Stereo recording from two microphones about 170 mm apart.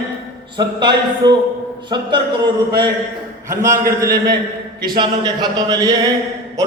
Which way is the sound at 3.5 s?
15° right (ahead or behind).